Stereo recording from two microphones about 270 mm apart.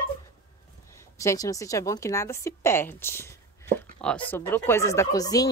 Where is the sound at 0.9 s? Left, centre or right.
Centre.